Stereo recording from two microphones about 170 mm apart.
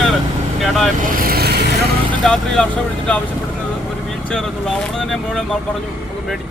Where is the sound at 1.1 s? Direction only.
60° right (ahead or behind).